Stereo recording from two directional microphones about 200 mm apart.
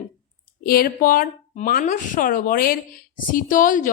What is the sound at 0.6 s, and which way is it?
A woman's voice, 50° left (ahead or behind).